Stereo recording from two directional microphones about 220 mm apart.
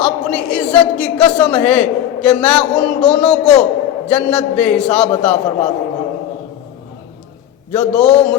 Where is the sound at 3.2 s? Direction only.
30° left (ahead or behind).